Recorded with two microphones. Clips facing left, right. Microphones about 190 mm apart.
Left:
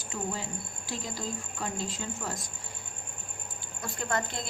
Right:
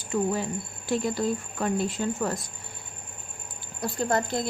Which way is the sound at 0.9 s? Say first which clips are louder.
Right 11 dB; 60° right (ahead or behind).